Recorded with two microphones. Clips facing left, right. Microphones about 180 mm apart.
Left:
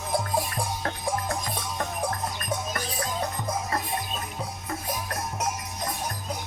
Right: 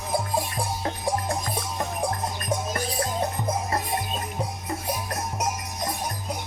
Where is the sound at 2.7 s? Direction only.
30° right (ahead or behind).